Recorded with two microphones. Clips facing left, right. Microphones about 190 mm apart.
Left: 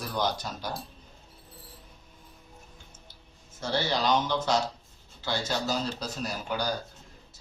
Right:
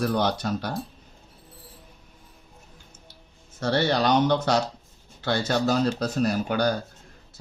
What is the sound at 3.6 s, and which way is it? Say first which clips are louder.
Speech: right 6 dB; 60° right (ahead or behind).